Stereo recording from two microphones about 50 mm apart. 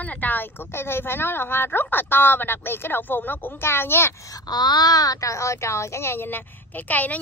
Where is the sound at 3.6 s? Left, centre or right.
Left.